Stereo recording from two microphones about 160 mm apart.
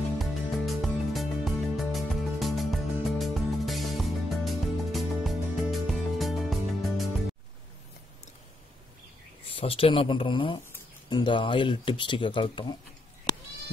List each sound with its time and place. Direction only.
0.2 s music: centre (ahead or behind)
9.5 s speech: 35° left (ahead or behind)